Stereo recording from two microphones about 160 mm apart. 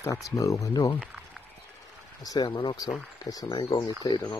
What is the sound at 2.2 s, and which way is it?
Speech, 25° left (ahead or behind).